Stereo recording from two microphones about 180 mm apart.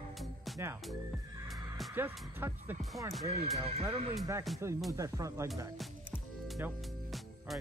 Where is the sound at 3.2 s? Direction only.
35° right (ahead or behind).